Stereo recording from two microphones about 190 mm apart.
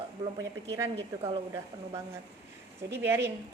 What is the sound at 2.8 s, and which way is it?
Speech, 10° right (ahead or behind).